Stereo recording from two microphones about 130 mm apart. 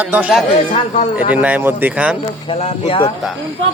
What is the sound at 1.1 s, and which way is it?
Speech, 10° right (ahead or behind).